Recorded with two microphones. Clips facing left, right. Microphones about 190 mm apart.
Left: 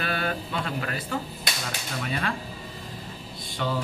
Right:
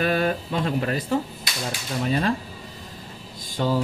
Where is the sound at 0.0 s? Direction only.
40° right (ahead or behind).